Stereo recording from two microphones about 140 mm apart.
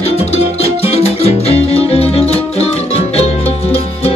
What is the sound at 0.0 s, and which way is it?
Music, 50° left (ahead or behind).